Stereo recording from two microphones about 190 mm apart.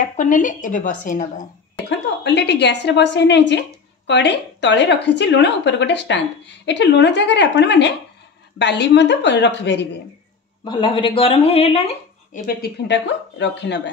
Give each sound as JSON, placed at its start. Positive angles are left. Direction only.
{"t": 0.0, "sound": "a woman's voice", "side_deg": 45}
{"t": 1.9, "sound": "a woman's voice", "side_deg": 65}
{"t": 10.6, "sound": "speech", "side_deg": 25}
{"t": 12.4, "sound": "a woman's voice", "side_deg": 60}